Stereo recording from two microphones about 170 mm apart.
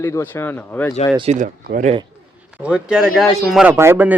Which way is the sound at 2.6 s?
5° right (ahead or behind).